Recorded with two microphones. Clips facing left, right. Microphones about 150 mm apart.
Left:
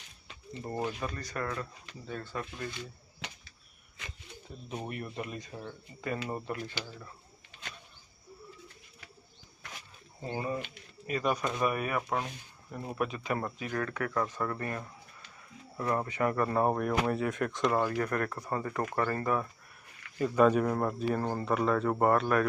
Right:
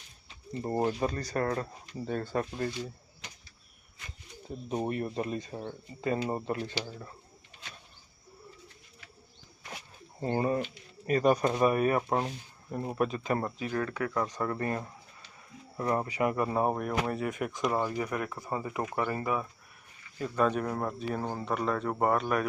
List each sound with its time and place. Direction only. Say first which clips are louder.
0.6 s speech: right 6 dB; 30° right (ahead or behind)
4.7 s speech: right 7 dB; 30° right (ahead or behind)
10.2 s speech: right 6 dB; 50° right (ahead or behind)
11.4 s speech: right 6 dB; 30° right (ahead or behind)
13.4 s speech: right 2 dB; 20° right (ahead or behind); by 22.4 s centre (ahead or behind)